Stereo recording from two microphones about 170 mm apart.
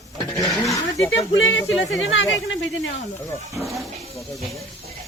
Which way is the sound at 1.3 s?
90° left.